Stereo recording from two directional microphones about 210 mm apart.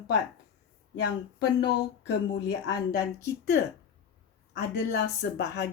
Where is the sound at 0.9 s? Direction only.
50° left (ahead or behind).